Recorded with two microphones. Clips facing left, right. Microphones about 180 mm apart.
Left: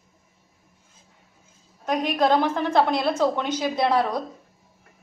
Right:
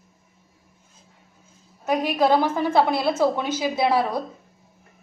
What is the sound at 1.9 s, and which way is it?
A woman's voice, 5° right (ahead or behind).